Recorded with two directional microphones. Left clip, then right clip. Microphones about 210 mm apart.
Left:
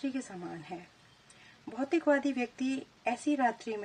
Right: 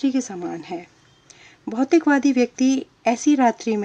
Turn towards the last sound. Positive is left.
turn(degrees=-35)  # may be behind; listen again after turning